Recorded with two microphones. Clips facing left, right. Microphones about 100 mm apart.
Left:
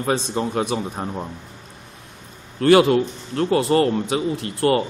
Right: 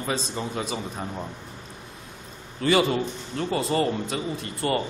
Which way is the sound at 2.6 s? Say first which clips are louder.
Left 7 dB; 65° left (ahead or behind).